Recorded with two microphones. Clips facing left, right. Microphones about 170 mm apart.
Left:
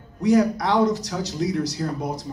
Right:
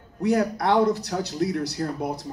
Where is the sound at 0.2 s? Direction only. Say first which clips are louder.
Left 4 dB; 55° right (ahead or behind).